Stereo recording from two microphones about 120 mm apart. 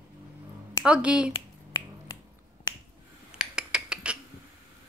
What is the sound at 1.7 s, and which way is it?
Finger snapping, 40° left (ahead or behind).